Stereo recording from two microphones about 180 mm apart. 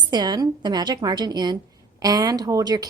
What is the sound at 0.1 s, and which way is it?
A woman's voice, 25° right (ahead or behind).